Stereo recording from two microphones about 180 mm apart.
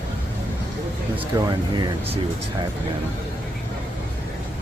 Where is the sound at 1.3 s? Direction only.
15° right (ahead or behind).